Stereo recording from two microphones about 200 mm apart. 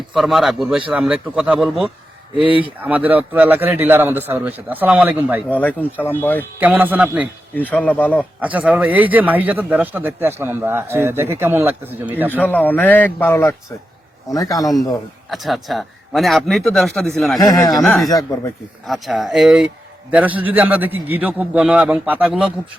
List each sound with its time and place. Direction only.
0.1 s a man's voice: centre (ahead or behind)
5.5 s a man's voice: 10° left (ahead or behind)
6.6 s speech: 10° right (ahead or behind)
7.5 s a man's voice: 10° left (ahead or behind)
8.4 s speech: 5° right (ahead or behind)
12.4 s a man's voice: 10° left (ahead or behind)
15.3 s a man's voice: centre (ahead or behind)
17.4 s speech: 20° left (ahead or behind)
17.7 s a man's voice: centre (ahead or behind)
18.1 s a man's voice: 20° left (ahead or behind)
18.9 s a man's voice: centre (ahead or behind)